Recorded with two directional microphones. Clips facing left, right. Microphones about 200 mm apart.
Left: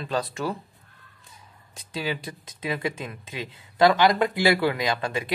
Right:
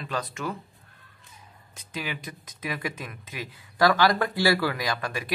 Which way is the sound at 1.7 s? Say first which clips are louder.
Left 5 dB; 30° left (ahead or behind).